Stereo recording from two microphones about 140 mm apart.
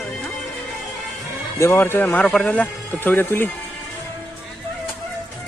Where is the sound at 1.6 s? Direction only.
15° left (ahead or behind).